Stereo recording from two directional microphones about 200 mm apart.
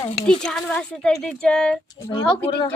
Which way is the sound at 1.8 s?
20° left (ahead or behind).